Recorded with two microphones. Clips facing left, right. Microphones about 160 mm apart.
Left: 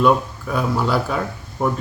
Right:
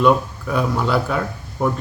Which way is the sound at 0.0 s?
Centre (ahead or behind).